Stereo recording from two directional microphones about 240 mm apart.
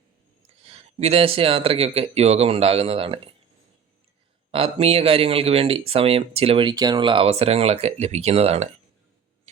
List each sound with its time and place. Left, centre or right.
0.6 s speech: right
4.5 s speech: right